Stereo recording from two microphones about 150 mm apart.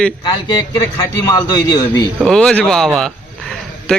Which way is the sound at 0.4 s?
20° left (ahead or behind).